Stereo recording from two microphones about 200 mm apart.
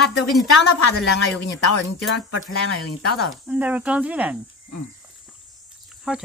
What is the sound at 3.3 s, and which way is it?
Speech, 5° right (ahead or behind).